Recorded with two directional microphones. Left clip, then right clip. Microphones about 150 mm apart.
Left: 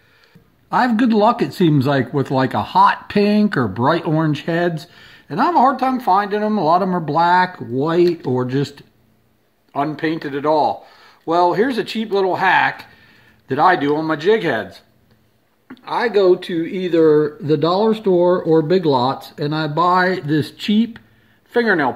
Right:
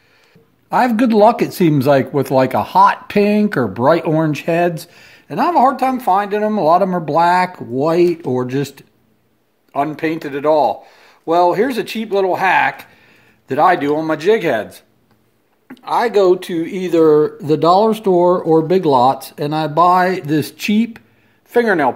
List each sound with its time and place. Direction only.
0.7 s speech: 25° right (ahead or behind)
15.7 s speech: 35° right (ahead or behind)